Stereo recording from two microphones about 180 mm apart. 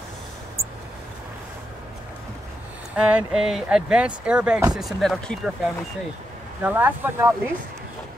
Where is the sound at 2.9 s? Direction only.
5° right (ahead or behind).